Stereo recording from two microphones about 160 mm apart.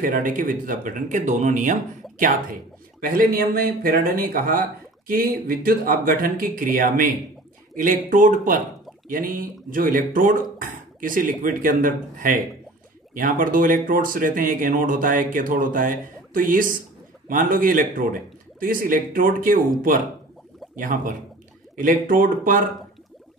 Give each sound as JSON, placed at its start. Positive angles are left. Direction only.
{"t": 0.0, "sound": "speech", "side_deg": -55}
{"t": 20.7, "sound": "speech", "side_deg": -55}